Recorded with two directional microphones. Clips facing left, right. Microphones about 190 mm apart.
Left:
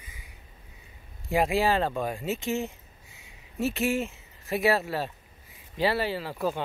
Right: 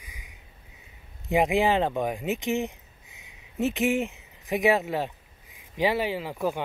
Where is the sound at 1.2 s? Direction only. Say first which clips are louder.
Right 2 dB; 20° right (ahead or behind).